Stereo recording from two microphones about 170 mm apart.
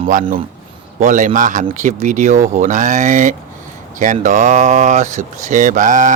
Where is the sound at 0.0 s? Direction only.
50° right (ahead or behind).